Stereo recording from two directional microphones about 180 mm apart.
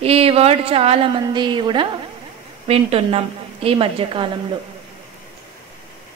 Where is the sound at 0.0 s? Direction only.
35° right (ahead or behind).